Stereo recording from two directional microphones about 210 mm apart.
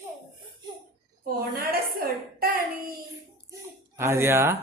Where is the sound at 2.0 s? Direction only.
45° right (ahead or behind).